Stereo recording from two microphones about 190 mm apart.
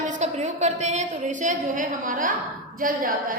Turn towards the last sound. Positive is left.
turn(degrees=-50)  # may be behind; listen again after turning